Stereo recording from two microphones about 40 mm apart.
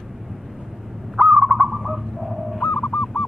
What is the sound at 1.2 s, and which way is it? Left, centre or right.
Owl, centre.